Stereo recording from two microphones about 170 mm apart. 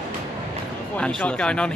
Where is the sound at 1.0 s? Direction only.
5° left (ahead or behind).